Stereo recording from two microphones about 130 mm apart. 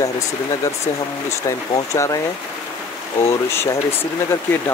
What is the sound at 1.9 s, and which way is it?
Speech, 25° left (ahead or behind).